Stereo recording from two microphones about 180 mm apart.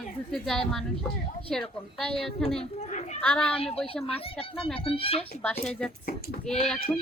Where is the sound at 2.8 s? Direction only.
40° left (ahead or behind).